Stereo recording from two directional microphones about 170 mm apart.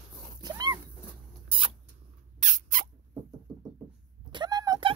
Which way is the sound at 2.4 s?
50° right (ahead or behind).